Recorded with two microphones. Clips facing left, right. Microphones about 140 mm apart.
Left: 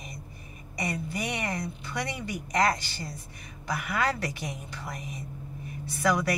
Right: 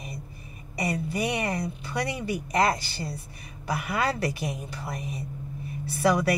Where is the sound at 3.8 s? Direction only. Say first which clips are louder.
Right 2 dB; 30° right (ahead or behind).